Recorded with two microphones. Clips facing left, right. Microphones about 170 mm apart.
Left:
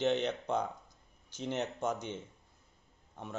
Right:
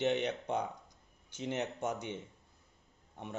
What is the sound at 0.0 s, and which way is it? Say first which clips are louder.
Speech: left 1 dB; 15° right (ahead or behind).